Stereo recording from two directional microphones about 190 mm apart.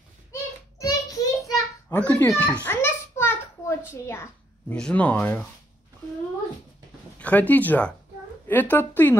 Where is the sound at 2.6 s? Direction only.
10° left (ahead or behind).